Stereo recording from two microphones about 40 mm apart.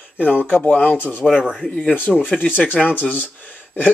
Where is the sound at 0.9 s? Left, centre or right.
Left.